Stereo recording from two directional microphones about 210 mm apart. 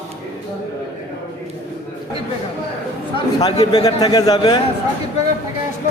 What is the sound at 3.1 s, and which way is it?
A man's voice, 20° left (ahead or behind).